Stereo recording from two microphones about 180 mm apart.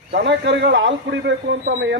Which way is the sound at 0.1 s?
70° right (ahead or behind).